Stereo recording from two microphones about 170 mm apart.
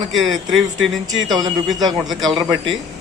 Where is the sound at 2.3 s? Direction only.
30° right (ahead or behind).